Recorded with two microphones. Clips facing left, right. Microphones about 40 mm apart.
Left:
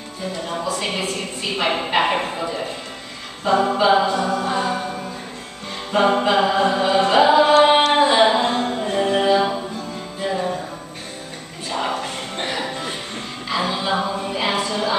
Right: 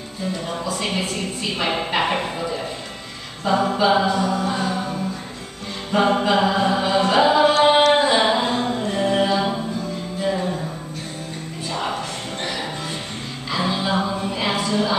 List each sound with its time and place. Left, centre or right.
0.5 s speech: centre
3.6 s speech: centre
4.3 s music: centre
5.9 s music: centre
7.6 s singing: centre
8.7 s music: centre
12.0 s music: left
13.5 s music: centre